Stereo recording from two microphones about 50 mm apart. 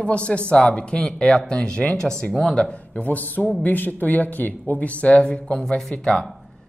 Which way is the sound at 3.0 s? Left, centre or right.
Left.